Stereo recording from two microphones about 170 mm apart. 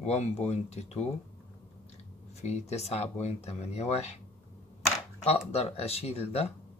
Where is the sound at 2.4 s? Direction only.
40° left (ahead or behind).